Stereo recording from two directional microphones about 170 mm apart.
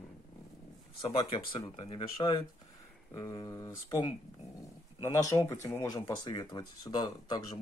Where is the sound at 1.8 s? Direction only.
35° left (ahead or behind).